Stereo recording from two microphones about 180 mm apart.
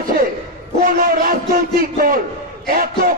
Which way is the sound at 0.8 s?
55° right (ahead or behind).